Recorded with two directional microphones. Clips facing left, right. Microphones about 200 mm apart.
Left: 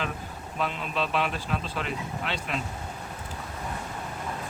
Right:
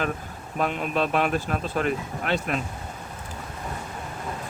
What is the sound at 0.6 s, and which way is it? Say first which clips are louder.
Speech: right 5 dB; 50° right (ahead or behind).